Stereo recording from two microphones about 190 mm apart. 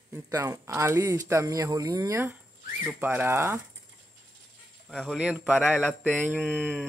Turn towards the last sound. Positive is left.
turn(degrees=-10)  # may be behind; listen again after turning